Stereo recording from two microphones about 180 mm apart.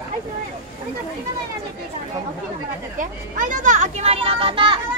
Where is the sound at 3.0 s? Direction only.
45° right (ahead or behind); by 4.7 s 30° right (ahead or behind).